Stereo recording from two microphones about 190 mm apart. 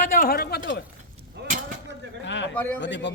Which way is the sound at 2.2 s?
75° left (ahead or behind).